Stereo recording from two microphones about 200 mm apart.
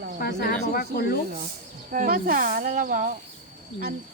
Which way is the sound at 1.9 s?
45° right (ahead or behind).